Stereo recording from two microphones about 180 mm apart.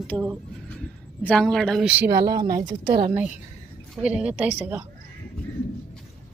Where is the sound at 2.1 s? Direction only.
25° right (ahead or behind).